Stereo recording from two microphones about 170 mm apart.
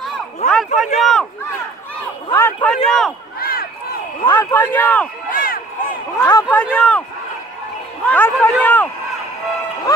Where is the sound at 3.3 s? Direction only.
60° left (ahead or behind).